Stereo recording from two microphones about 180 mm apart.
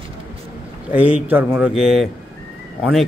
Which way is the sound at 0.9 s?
10° right (ahead or behind).